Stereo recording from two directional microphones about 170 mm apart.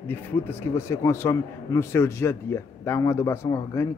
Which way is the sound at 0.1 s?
10° left (ahead or behind).